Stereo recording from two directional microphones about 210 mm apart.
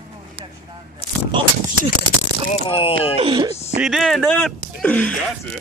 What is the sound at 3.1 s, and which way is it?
Speech, 25° right (ahead or behind).